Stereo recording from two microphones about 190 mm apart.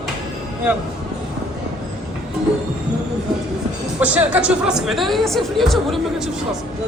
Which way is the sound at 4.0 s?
10° right (ahead or behind).